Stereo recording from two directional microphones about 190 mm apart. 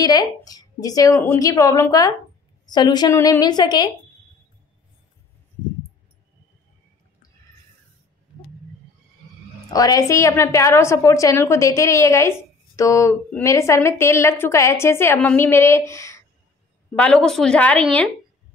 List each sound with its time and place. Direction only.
0.0 s a woman's voice: 20° left (ahead or behind)
9.7 s a woman's voice: 20° left (ahead or behind)